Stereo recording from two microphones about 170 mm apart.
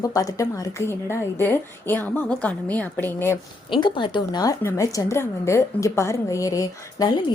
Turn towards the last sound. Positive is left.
turn(degrees=20)  # may be behind; listen again after turning